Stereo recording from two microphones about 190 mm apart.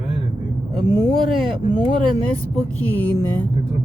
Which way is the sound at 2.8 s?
10° left (ahead or behind).